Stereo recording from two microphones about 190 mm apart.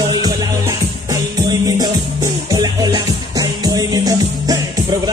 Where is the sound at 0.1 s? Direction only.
20° right (ahead or behind).